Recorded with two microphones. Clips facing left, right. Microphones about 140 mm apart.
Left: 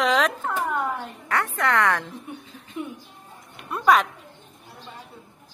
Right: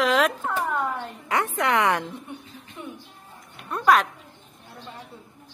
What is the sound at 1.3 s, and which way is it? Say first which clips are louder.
Speech: even; 20° right (ahead or behind).